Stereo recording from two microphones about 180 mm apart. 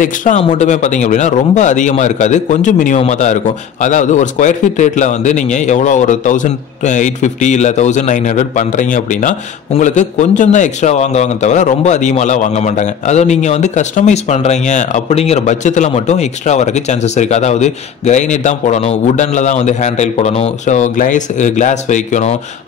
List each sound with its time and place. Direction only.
0.0 s a man's voice: 45° left (ahead or behind)